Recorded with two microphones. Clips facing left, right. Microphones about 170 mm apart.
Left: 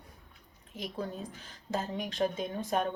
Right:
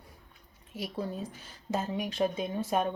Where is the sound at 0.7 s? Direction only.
5° right (ahead or behind).